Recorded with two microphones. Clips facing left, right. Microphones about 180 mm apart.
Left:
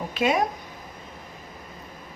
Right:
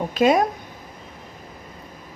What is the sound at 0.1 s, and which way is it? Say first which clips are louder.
Speech: right 6 dB; 40° right (ahead or behind).